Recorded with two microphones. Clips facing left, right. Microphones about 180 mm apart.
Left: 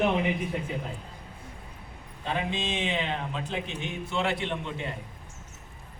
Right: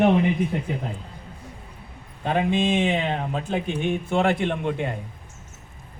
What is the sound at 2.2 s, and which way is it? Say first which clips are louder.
Speech: right 9 dB; 50° right (ahead or behind).